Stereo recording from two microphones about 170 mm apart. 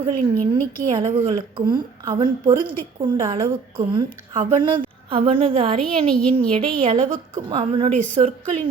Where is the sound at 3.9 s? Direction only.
30° right (ahead or behind).